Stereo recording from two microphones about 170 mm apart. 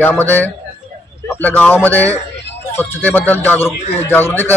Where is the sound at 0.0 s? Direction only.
10° left (ahead or behind).